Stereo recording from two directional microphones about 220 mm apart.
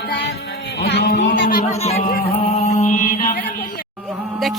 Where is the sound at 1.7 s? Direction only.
30° left (ahead or behind).